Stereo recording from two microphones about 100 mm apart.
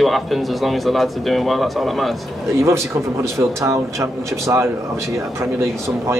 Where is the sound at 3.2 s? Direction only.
30° right (ahead or behind).